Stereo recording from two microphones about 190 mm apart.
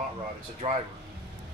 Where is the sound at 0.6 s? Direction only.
30° right (ahead or behind).